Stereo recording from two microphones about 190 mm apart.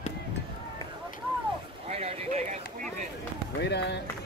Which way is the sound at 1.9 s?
35° right (ahead or behind).